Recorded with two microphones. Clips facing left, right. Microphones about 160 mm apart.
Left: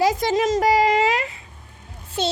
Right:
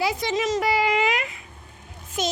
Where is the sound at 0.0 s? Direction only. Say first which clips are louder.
Left 5 dB; 45° left (ahead or behind).